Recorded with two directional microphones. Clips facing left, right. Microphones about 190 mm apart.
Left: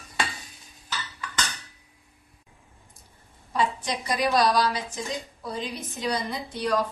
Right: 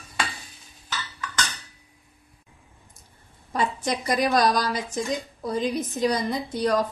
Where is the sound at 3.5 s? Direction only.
45° right (ahead or behind).